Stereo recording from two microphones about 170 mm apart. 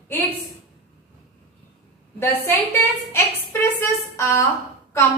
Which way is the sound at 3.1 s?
15° left (ahead or behind).